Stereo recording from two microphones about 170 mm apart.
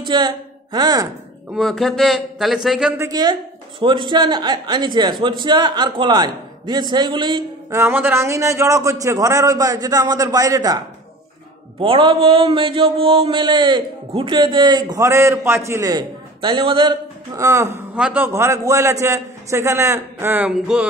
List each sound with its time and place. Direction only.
0.0 s speech: 25° right (ahead or behind)
1.5 s a man's voice: centre (ahead or behind)
3.0 s a man's voice: 25° right (ahead or behind)
7.8 s a man's voice: 15° right (ahead or behind)
11.8 s a man's voice: 30° right (ahead or behind); by 20.8 s 5° right (ahead or behind)